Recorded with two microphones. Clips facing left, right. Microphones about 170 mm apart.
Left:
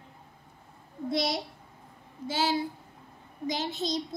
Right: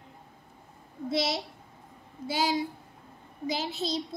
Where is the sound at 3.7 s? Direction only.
30° right (ahead or behind).